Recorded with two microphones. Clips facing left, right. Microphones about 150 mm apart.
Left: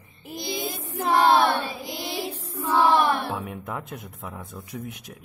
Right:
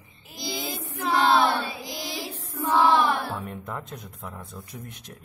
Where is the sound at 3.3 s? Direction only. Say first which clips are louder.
Left 2 dB; 5° left (ahead or behind).